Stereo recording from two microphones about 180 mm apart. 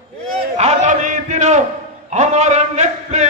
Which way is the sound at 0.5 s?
40° right (ahead or behind).